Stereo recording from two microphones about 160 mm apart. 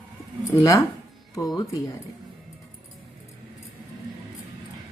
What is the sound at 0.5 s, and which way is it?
Speech, 20° left (ahead or behind).